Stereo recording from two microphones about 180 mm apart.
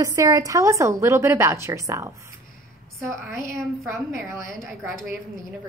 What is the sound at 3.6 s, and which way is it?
A woman's voice, centre (ahead or behind).